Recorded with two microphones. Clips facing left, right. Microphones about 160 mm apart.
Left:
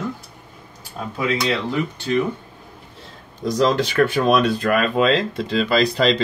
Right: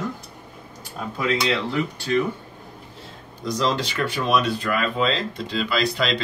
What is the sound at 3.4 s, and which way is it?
Speech, 45° left (ahead or behind).